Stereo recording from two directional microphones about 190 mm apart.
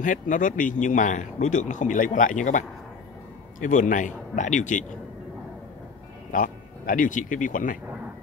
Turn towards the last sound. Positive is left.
turn(degrees=45)  # may be behind; listen again after turning